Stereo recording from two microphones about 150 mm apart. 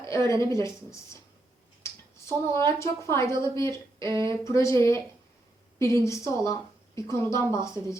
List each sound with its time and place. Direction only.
0.0 s speech: 20° left (ahead or behind)
1.8 s a sound: 20° left (ahead or behind)
2.7 s speech: 20° left (ahead or behind)
4.0 s speech: 30° right (ahead or behind)
4.3 s speech: 20° left (ahead or behind)